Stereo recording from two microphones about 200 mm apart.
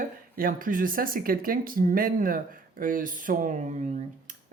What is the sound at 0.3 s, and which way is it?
Speech, 45° right (ahead or behind).